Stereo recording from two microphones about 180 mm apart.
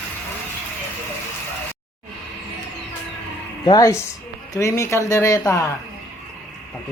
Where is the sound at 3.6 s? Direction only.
20° left (ahead or behind).